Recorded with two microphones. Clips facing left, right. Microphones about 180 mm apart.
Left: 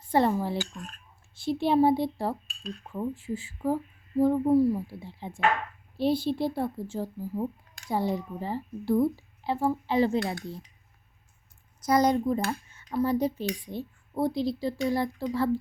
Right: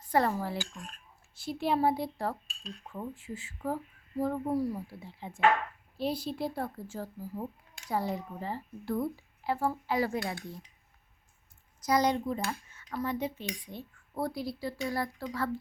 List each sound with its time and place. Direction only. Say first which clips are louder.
0.1 s speech: left 4 dB; 25° left (ahead or behind)
11.9 s speech: left 5 dB; 45° left (ahead or behind); by 15.4 s 25° left (ahead or behind)